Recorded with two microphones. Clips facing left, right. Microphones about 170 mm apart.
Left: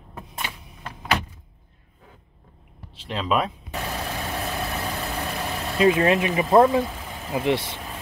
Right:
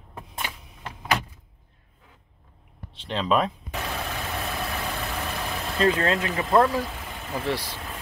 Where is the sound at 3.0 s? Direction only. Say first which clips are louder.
Right 1 dB; 5° left (ahead or behind).